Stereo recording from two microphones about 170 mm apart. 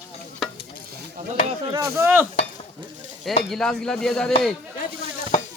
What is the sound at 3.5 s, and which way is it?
Speech, 5° left (ahead or behind).